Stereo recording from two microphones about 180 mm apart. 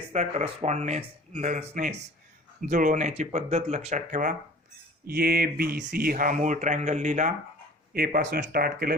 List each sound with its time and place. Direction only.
0.1 s speech: 40° right (ahead or behind)
5.0 s speech: 60° right (ahead or behind); by 7.3 s 40° right (ahead or behind)
7.9 s speech: 55° right (ahead or behind)